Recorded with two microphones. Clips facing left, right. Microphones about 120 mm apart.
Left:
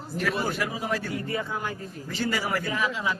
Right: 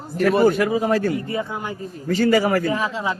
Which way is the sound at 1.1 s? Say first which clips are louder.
Right 5 dB; 20° right (ahead or behind).